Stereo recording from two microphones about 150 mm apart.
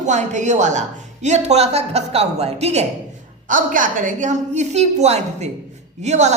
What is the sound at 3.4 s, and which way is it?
A woman's voice, 60° right (ahead or behind).